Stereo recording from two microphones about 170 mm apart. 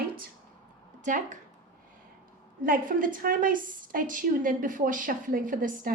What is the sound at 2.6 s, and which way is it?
A woman's voice, 55° right (ahead or behind).